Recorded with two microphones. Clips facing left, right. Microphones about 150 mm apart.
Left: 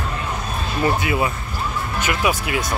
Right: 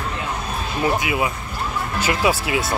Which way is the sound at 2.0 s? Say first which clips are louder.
Right 2 dB; 30° right (ahead or behind).